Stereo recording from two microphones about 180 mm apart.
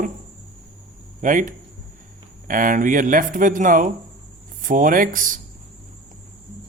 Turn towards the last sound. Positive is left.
turn(degrees=-50)  # may be behind; listen again after turning